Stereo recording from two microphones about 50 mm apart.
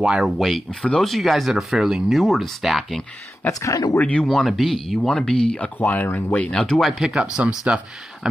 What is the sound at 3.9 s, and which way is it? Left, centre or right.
Speech, left.